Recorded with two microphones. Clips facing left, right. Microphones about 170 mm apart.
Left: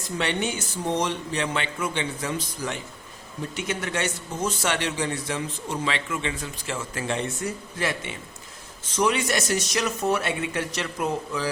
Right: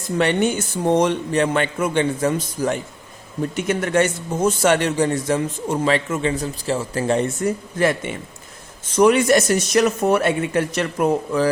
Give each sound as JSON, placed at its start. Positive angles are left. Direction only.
{"t": 0.2, "sound": "a man's voice", "side_deg": -50}